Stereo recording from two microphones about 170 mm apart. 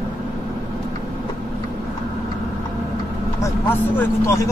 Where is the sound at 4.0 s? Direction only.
15° left (ahead or behind).